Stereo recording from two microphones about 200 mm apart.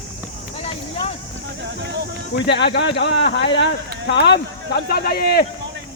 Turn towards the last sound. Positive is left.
turn(degrees=50)  # may be behind; listen again after turning